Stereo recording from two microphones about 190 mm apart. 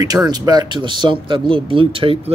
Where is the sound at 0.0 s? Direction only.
20° right (ahead or behind).